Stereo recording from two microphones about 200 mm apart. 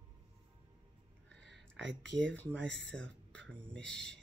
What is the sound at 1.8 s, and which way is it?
Speech, 65° right (ahead or behind).